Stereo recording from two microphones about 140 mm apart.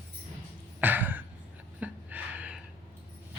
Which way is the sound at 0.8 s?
15° right (ahead or behind).